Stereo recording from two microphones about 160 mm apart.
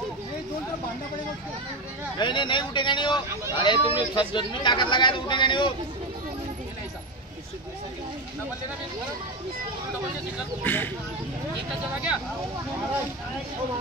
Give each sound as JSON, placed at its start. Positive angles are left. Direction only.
{"t": 2.1, "sound": "speech", "side_deg": 30}
{"t": 10.6, "sound": "speech", "side_deg": 10}